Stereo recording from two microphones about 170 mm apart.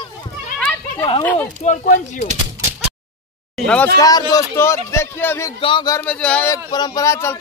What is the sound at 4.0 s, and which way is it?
A man's voice, 20° left (ahead or behind).